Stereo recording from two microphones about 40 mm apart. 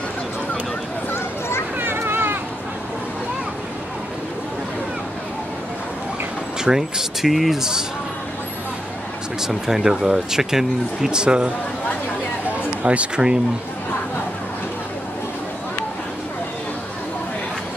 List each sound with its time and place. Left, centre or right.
1.8 s a sound: right
6.6 s speech: centre
9.4 s speech: centre
12.8 s speech: right